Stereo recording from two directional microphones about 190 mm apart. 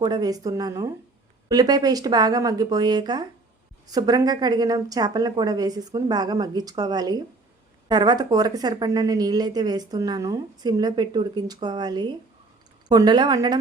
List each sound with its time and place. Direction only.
0.0 s a woman's voice: 20° right (ahead or behind)